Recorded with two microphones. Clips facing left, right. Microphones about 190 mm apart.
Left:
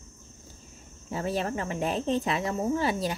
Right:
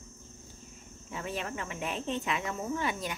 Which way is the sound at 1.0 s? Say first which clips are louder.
Left 7 dB; 35° left (ahead or behind).